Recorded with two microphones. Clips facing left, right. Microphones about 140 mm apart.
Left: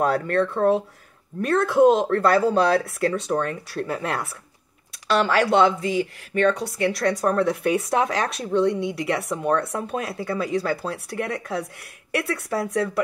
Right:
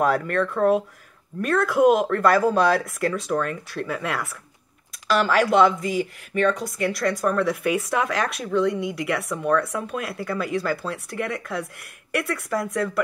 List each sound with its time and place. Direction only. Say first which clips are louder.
0.0 s speech: left 1 dB; 30° left (ahead or behind)
8.7 s speech: left 1 dB; centre (ahead or behind)
9.5 s speech: right 1 dB; 30° left (ahead or behind)
12.2 s speech: even; 30° left (ahead or behind)